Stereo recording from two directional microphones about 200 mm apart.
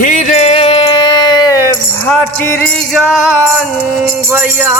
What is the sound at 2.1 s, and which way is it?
Speech, 10° left (ahead or behind).